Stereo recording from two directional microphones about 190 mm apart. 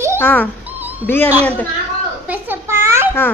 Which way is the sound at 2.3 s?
10° right (ahead or behind).